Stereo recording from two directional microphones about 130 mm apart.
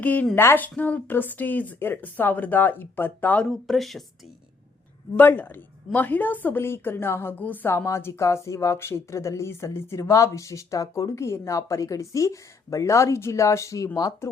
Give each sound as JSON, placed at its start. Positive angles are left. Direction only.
{"t": 0.0, "sound": "speech", "side_deg": 10}
{"t": 3.5, "sound": "speech", "side_deg": 0}
{"t": 5.1, "sound": "a woman's voice", "side_deg": 15}